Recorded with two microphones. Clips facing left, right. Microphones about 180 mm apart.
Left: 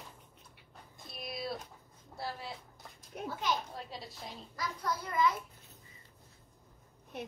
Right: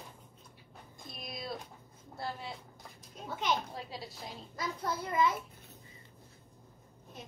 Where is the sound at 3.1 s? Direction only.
65° left (ahead or behind).